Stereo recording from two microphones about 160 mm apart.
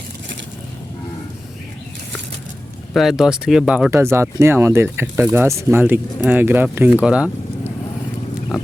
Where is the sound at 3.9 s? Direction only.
15° right (ahead or behind).